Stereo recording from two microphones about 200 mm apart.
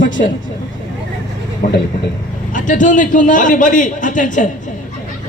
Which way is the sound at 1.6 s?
45° left (ahead or behind).